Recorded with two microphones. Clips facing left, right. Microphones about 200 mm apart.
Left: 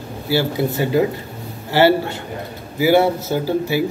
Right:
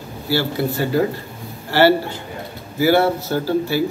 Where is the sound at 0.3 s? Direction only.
20° left (ahead or behind).